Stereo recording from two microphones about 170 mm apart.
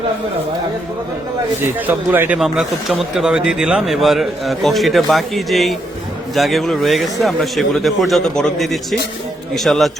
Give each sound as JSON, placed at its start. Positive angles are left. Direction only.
{"t": 1.6, "sound": "a man's voice", "side_deg": -10}